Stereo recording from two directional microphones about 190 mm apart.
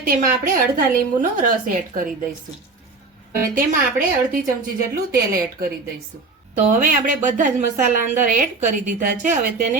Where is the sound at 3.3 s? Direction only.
45° right (ahead or behind).